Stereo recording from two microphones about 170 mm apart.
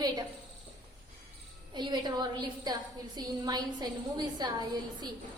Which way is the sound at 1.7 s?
25° right (ahead or behind).